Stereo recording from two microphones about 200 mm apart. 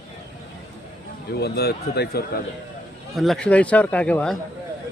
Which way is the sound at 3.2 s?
Centre (ahead or behind).